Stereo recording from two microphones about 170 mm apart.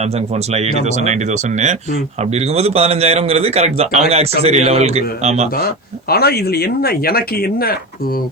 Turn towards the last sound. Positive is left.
turn(degrees=60)  # may be behind; listen again after turning